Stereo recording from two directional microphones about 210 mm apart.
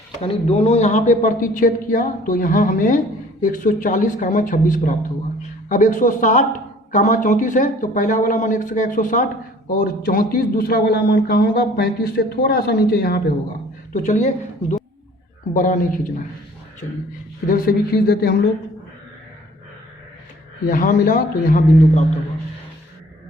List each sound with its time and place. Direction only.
0.2 s a man's voice: 30° left (ahead or behind); by 13.2 s 45° left (ahead or behind)
13.9 s speech: 35° left (ahead or behind)
15.5 s a man's voice: 40° left (ahead or behind)
20.7 s speech: 40° left (ahead or behind)